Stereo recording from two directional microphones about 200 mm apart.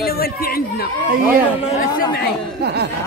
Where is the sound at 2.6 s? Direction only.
55° right (ahead or behind).